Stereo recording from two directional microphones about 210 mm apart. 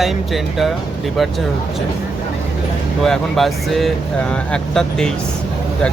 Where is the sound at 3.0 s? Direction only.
Centre (ahead or behind).